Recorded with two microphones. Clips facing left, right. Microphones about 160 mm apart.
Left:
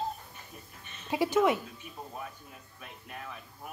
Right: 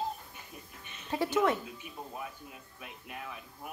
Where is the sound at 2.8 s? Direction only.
10° right (ahead or behind).